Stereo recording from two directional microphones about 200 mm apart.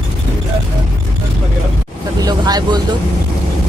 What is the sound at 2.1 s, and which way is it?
Vehicle, 20° right (ahead or behind).